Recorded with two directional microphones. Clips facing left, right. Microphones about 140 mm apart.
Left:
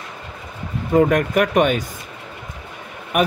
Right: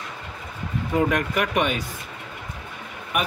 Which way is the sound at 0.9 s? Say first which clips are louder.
Left 7 dB; 50° left (ahead or behind).